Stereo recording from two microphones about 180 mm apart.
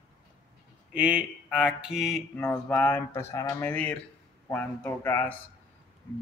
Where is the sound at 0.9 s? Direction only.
5° right (ahead or behind).